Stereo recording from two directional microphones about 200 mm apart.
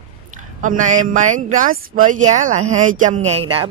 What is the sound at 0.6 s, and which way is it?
Speech, 40° right (ahead or behind).